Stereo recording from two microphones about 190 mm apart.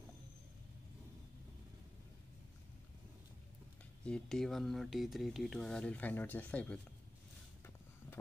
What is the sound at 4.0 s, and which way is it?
Speech, 5° left (ahead or behind).